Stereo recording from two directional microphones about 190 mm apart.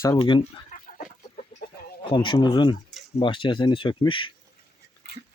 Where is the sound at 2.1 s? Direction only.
25° left (ahead or behind).